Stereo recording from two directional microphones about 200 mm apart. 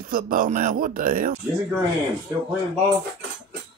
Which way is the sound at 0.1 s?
45° right (ahead or behind).